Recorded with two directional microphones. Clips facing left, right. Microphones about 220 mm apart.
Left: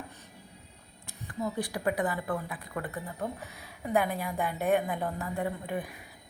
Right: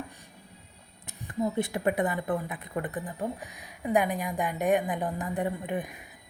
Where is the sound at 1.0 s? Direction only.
20° right (ahead or behind).